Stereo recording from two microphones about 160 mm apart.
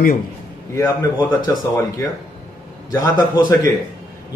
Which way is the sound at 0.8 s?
20° left (ahead or behind).